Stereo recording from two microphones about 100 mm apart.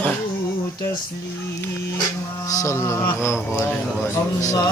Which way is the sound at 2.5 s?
30° left (ahead or behind).